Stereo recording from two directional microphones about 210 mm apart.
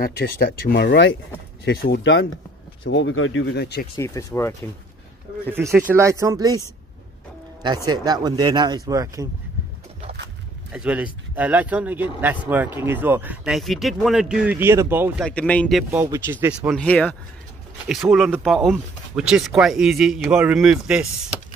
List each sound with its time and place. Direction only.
0.0 s speech: 45° left (ahead or behind)
3.9 s speech: 15° left (ahead or behind)
5.6 s speech: 10° right (ahead or behind)
10.7 s speech: 5° right (ahead or behind)
15.2 s speech: 5° left (ahead or behind)
15.9 s speech: 10° right (ahead or behind)
16.7 s speech: 5° left (ahead or behind)